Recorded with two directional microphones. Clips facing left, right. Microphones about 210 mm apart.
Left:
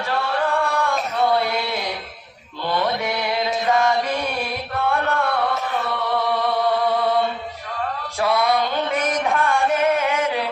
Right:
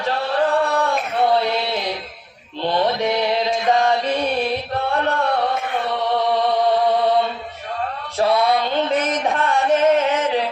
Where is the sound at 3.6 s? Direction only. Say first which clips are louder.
Right 1 dB; 35° right (ahead or behind).